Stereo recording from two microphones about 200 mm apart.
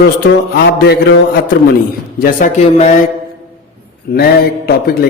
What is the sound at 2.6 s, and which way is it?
Mantra, 35° left (ahead or behind).